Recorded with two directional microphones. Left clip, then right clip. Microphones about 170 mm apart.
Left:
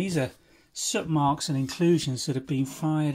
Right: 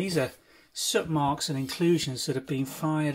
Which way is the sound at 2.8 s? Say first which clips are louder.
Even; 25° left (ahead or behind).